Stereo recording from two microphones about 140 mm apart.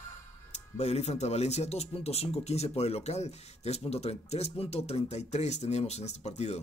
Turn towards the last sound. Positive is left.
turn(degrees=55)  # may be behind; listen again after turning